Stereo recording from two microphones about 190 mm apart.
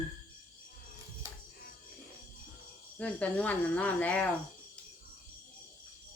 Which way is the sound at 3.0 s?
5° left (ahead or behind).